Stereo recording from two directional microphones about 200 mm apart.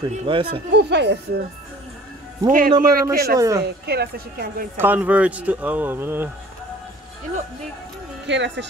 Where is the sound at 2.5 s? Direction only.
45° right (ahead or behind).